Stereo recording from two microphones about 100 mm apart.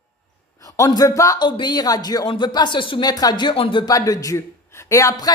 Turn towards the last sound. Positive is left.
turn(degrees=35)  # may be behind; listen again after turning